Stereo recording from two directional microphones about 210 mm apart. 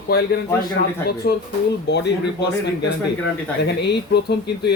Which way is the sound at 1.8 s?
55° left (ahead or behind).